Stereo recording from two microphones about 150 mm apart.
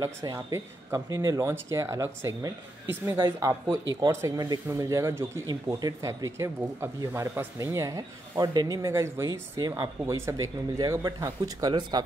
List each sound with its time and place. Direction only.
0.0 s speech: 25° right (ahead or behind)